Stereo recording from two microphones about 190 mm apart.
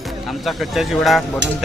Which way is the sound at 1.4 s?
65° right (ahead or behind).